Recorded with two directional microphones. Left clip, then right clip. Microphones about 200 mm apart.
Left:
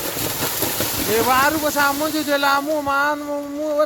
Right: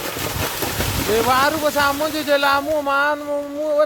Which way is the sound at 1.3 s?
50° right (ahead or behind).